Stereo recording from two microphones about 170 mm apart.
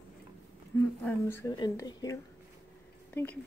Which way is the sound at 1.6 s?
25° left (ahead or behind).